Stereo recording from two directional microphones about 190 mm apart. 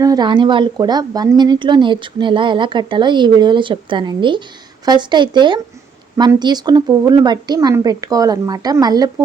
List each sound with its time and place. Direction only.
0.0 s a woman's voice: 20° right (ahead or behind)